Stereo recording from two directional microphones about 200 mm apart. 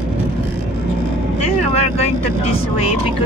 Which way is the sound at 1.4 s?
30° left (ahead or behind).